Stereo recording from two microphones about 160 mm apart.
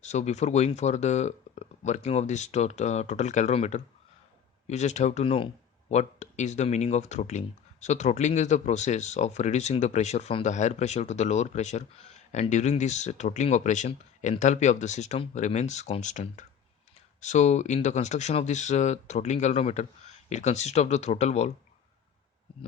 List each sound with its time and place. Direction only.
0.0 s speech: 45° left (ahead or behind)